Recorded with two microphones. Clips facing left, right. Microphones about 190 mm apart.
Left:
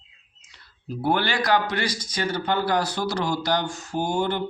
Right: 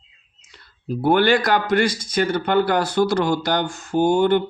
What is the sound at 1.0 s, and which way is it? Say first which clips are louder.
A man's voice: right 7 dB; 55° right (ahead or behind).